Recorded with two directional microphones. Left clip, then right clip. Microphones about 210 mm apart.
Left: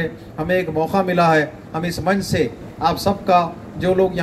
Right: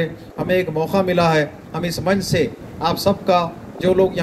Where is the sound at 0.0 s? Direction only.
50° right (ahead or behind).